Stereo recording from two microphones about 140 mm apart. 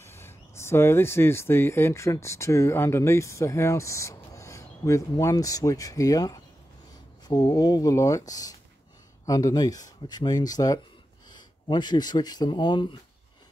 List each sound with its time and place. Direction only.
0.0 s speech: 15° left (ahead or behind); by 12.9 s 35° left (ahead or behind)